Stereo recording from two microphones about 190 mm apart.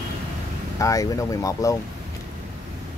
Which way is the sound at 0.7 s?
15° left (ahead or behind).